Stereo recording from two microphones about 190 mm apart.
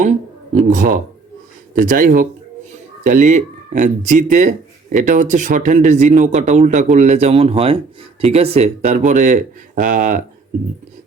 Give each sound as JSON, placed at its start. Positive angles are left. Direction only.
{"t": 0.0, "sound": "speech", "side_deg": -40}